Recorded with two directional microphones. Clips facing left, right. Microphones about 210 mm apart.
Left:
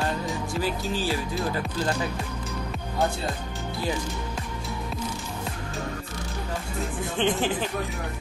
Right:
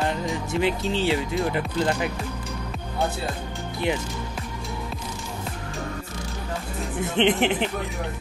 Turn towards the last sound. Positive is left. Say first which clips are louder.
# right 4 dB
turn(degrees=-20)  # may be behind; listen again after turning